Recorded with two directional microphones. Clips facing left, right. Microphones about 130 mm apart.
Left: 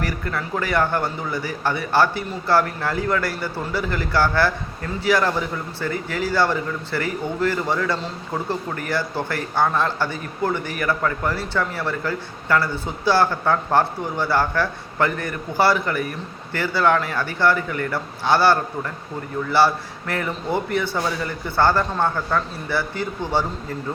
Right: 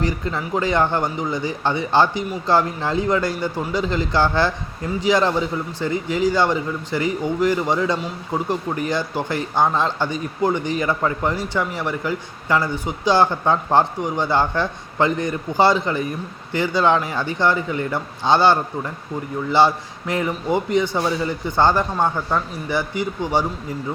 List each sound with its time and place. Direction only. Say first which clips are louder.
0.0 s a man's voice: right 3 dB; 20° right (ahead or behind)